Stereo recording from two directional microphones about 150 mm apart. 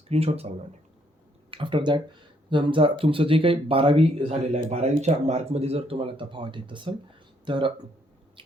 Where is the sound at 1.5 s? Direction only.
35° right (ahead or behind).